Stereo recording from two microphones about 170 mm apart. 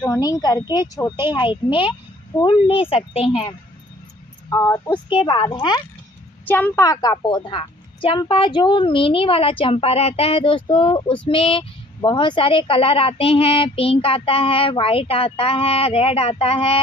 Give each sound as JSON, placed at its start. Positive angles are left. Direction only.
{"t": 0.0, "sound": "a woman's voice", "side_deg": 20}
{"t": 4.5, "sound": "speech", "side_deg": 20}
{"t": 6.4, "sound": "a woman's voice", "side_deg": 10}